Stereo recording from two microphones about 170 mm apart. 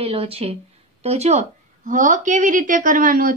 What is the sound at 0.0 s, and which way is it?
A woman's voice, 35° right (ahead or behind).